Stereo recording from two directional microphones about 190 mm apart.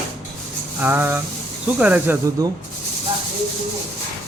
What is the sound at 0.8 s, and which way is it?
Speech, 10° right (ahead or behind).